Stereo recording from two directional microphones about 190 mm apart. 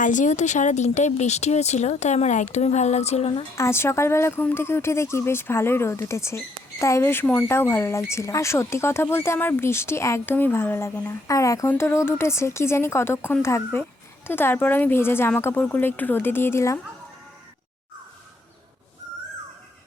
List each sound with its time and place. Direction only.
0.0 s speech: 40° left (ahead or behind)
3.5 s speech: 15° left (ahead or behind)